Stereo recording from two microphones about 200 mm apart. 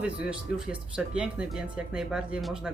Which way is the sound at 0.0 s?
5° right (ahead or behind).